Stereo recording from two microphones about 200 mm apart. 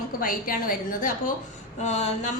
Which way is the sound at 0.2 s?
45° left (ahead or behind).